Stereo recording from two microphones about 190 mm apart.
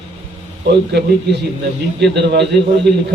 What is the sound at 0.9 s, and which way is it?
Speech, 60° right (ahead or behind).